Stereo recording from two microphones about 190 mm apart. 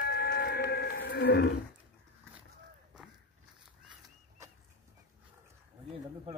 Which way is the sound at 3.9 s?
15° right (ahead or behind).